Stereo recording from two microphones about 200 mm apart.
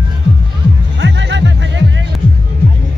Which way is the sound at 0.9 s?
65° right (ahead or behind).